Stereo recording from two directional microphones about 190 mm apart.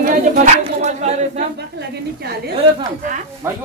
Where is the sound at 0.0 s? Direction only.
45° right (ahead or behind).